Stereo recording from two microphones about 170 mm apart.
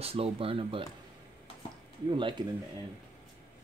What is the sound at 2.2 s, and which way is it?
Speech, 30° right (ahead or behind).